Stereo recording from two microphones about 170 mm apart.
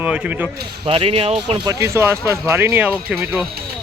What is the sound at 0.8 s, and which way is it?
Speech, 35° right (ahead or behind).